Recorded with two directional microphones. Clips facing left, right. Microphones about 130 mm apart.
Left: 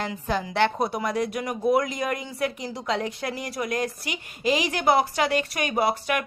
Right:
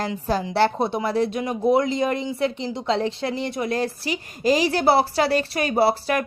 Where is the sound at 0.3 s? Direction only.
35° right (ahead or behind).